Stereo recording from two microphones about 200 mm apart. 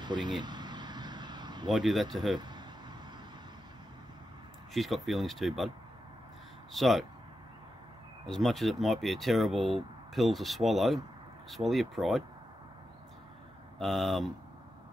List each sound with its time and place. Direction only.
0.0 s speech: 20° right (ahead or behind)
0.4 s vehicle: 20° right (ahead or behind)
1.7 s speech: centre (ahead or behind)
2.3 s a sound: 20° right (ahead or behind)
4.7 s speech: centre (ahead or behind)
6.7 s speech: centre (ahead or behind)
8.3 s speech: centre (ahead or behind)
13.7 s speech: centre (ahead or behind)